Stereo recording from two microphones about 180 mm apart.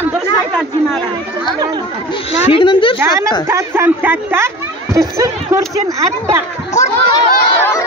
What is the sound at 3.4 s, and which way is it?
Speech, 15° right (ahead or behind).